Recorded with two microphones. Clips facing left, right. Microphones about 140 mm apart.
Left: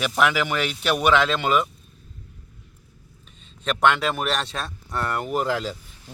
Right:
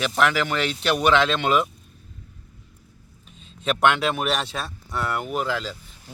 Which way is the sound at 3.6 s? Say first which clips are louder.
Even; 5° right (ahead or behind).